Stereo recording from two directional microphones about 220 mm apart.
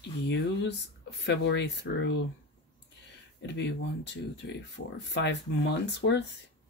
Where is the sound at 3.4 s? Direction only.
50° left (ahead or behind).